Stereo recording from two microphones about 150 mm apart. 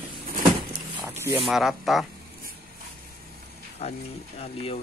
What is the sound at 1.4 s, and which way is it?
Speech, centre (ahead or behind).